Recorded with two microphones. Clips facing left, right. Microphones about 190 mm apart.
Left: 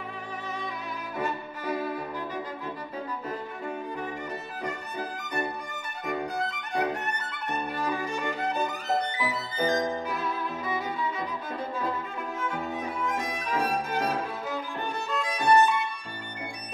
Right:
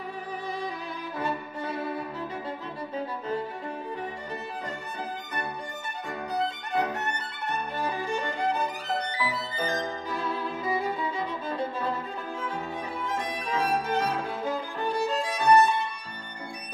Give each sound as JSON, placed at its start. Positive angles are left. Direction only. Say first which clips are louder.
{"t": 7.8, "sound": "violin", "louder": "right 1 dB", "side_deg": -30}
{"t": 9.2, "sound": "music", "louder": "left 2 dB", "side_deg": 15}
{"t": 10.1, "sound": "violin", "louder": "right 1 dB", "side_deg": -30}
{"t": 13.0, "sound": "violin", "louder": "left 1 dB", "side_deg": -30}
{"t": 15.0, "sound": "music", "louder": "right 1 dB", "side_deg": -35}